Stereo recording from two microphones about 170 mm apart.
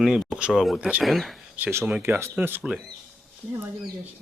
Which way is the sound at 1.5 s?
10° right (ahead or behind).